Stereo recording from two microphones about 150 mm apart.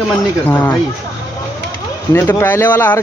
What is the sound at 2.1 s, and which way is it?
Speech, 15° left (ahead or behind).